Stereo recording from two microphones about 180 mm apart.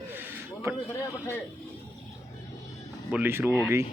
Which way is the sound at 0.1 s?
10° right (ahead or behind).